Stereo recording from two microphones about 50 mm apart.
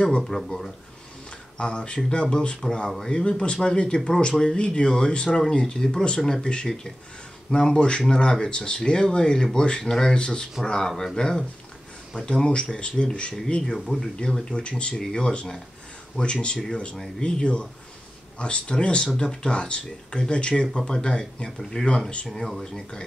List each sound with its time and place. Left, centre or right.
1.6 s speech: left
13.7 s speech: centre
14.1 s speech: centre
22.3 s speech: centre